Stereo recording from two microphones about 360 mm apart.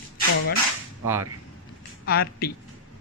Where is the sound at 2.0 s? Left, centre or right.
Left.